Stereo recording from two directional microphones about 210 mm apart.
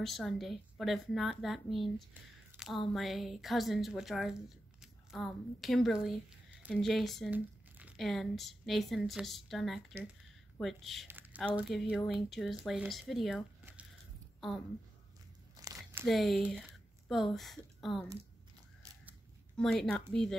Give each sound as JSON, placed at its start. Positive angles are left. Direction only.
{"t": 0.0, "sound": "speech", "side_deg": 0}
{"t": 2.5, "sound": "a sound", "side_deg": 0}
{"t": 2.9, "sound": "speech", "side_deg": 0}
{"t": 11.1, "sound": "a sound", "side_deg": -10}
{"t": 11.5, "sound": "speech", "side_deg": 0}
{"t": 15.5, "sound": "crumpling", "side_deg": -15}
{"t": 16.1, "sound": "speech", "side_deg": 0}
{"t": 19.5, "sound": "speech", "side_deg": 0}